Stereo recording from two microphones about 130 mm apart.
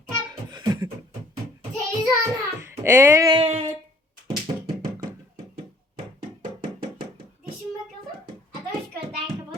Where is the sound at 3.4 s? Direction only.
55° right (ahead or behind).